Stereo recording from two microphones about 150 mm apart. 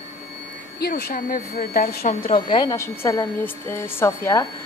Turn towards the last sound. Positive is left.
turn(degrees=20)  # may be behind; listen again after turning